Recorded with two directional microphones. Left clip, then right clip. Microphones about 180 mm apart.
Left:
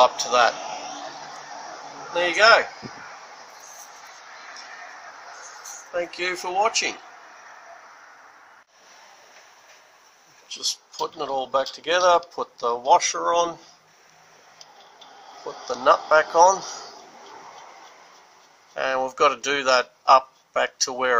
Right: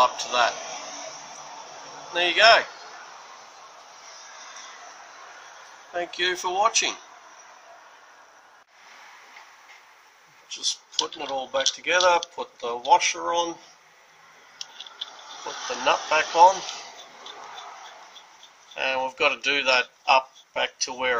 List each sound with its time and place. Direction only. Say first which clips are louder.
0.0 s speech: left 3 dB; 20° left (ahead or behind)
2.1 s speech: left 1 dB; 15° left (ahead or behind)
5.9 s speech: even; 15° left (ahead or behind)
10.5 s speech: right 2 dB; 15° left (ahead or behind)
15.8 s speech: left 5 dB; 15° left (ahead or behind)
18.8 s speech: left 3 dB; 15° left (ahead or behind)